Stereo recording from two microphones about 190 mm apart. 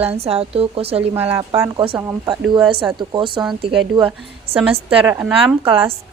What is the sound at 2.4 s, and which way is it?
Speech, 5° right (ahead or behind).